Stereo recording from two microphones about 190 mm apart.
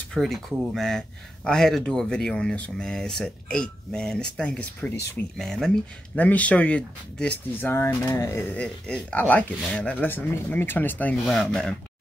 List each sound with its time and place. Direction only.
0.1 s speech: centre (ahead or behind)